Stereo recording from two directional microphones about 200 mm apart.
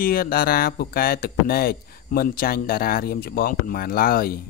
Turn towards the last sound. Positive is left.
turn(degrees=50)  # may be behind; listen again after turning